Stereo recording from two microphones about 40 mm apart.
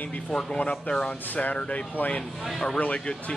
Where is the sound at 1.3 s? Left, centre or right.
Left.